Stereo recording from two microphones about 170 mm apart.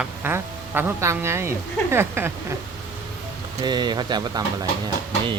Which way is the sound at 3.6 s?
25° right (ahead or behind).